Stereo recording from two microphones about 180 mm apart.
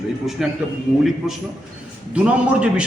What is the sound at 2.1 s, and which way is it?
Speech, 5° right (ahead or behind).